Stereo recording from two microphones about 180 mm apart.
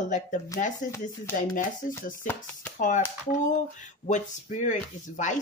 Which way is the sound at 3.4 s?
45° left (ahead or behind).